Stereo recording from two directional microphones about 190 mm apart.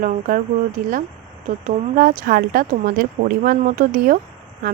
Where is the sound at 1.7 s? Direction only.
50° right (ahead or behind).